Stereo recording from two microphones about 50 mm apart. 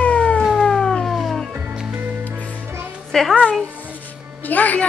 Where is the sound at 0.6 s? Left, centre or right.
Centre.